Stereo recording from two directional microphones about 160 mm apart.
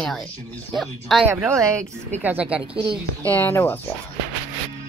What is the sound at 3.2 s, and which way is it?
Speech, 10° left (ahead or behind).